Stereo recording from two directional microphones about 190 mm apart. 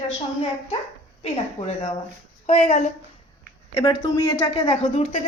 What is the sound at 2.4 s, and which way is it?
Speech, 35° left (ahead or behind).